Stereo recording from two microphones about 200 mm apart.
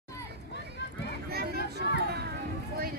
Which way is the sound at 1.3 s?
50° right (ahead or behind).